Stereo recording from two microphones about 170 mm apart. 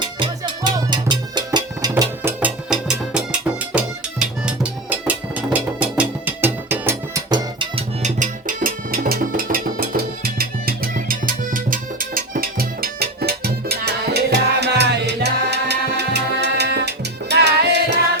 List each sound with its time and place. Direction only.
0.0 s music: 30° right (ahead or behind)
2.4 s music: 5° right (ahead or behind); by 7.7 s 20° right (ahead or behind)
7.8 s music: 45° right (ahead or behind); by 17.9 s 80° right